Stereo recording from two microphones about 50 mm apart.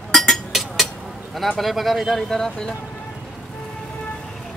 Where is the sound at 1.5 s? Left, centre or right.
Centre.